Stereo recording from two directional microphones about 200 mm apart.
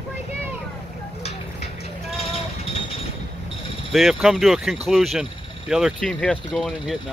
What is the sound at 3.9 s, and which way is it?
Speech, centre (ahead or behind).